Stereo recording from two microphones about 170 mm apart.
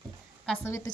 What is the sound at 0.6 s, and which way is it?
Speech, 15° left (ahead or behind).